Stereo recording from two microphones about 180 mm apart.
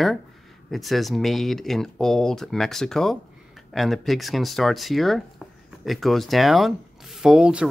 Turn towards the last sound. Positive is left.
turn(degrees=-5)  # may be behind; listen again after turning